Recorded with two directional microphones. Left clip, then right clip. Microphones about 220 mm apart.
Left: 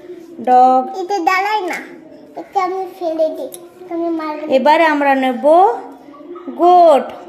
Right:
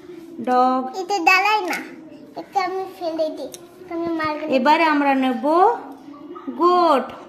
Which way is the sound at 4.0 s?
50° right (ahead or behind).